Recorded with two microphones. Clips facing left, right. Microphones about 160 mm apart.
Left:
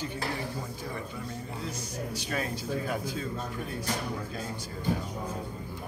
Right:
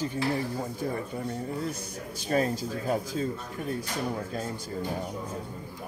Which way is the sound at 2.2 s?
40° right (ahead or behind).